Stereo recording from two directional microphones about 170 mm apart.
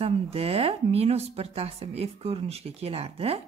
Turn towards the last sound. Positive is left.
turn(degrees=-35)  # may be behind; listen again after turning